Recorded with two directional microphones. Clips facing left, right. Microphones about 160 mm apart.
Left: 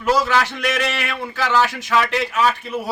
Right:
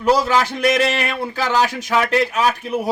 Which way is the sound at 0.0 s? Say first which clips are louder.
Right 2 dB; 35° right (ahead or behind).